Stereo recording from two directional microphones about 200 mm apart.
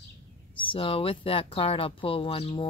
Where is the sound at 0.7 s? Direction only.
30° left (ahead or behind).